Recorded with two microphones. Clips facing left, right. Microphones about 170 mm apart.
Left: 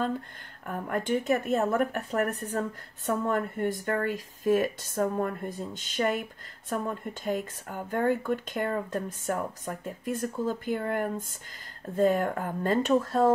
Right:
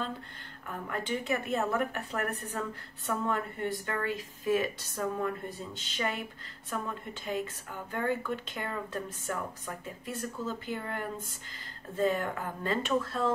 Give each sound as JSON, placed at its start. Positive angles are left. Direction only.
{"t": 0.7, "sound": "speech", "side_deg": 50}